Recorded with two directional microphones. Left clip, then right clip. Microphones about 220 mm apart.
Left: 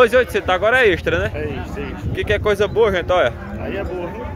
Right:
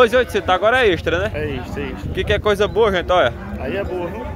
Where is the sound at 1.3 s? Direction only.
45° right (ahead or behind).